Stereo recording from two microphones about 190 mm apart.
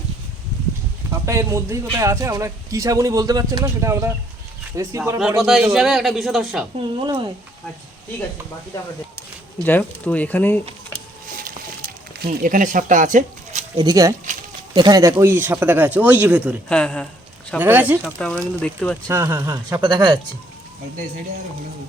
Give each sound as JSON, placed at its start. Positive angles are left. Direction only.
{"t": 1.2, "sound": "a man's voice", "side_deg": -15}
{"t": 5.4, "sound": "a man's voice", "side_deg": 0}
{"t": 7.0, "sound": "speech", "side_deg": -25}
{"t": 9.6, "sound": "speech", "side_deg": 10}
{"t": 12.2, "sound": "speech", "side_deg": -50}
{"t": 13.7, "sound": "a man's voice", "side_deg": -20}
{"t": 16.6, "sound": "a man's voice", "side_deg": 5}
{"t": 17.6, "sound": "a man's voice", "side_deg": -10}
{"t": 18.6, "sound": "a man's voice", "side_deg": 5}
{"t": 19.0, "sound": "a man's voice", "side_deg": -15}